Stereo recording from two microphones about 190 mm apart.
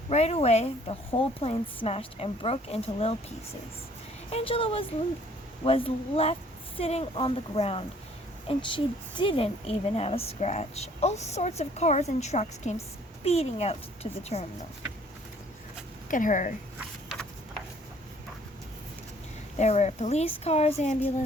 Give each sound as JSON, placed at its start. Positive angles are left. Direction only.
{"t": 0.1, "sound": "a woman's voice", "side_deg": 35}
{"t": 4.3, "sound": "a woman's voice", "side_deg": 30}
{"t": 16.0, "sound": "a woman's voice", "side_deg": 45}
{"t": 19.5, "sound": "a woman's voice", "side_deg": 35}